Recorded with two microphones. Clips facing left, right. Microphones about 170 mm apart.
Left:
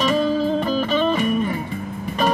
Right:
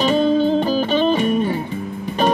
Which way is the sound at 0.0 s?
30° right (ahead or behind).